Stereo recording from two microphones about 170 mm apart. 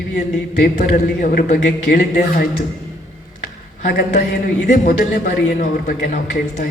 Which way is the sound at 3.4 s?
55° left (ahead or behind).